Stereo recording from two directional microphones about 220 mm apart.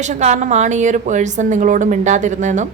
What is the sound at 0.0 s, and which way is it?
Speech, 30° right (ahead or behind).